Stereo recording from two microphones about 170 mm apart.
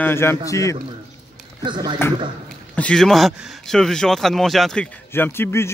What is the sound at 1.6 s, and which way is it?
Speech, 25° right (ahead or behind).